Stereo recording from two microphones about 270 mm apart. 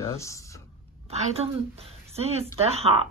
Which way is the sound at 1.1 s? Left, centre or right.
Right.